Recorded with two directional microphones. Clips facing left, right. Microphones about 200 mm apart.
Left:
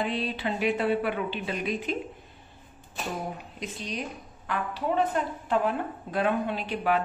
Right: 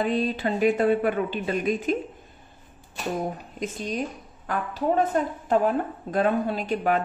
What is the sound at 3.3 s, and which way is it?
A woman's voice, 45° right (ahead or behind).